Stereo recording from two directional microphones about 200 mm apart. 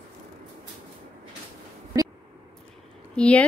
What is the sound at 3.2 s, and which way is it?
Speech, 5° left (ahead or behind).